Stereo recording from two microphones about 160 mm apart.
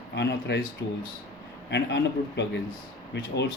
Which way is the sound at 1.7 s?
90° left.